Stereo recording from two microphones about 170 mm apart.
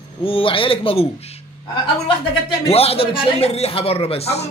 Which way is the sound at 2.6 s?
35° left (ahead or behind).